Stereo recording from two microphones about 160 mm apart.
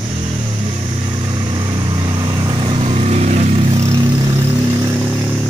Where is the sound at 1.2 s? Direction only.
25° right (ahead or behind); by 3.9 s 40° right (ahead or behind).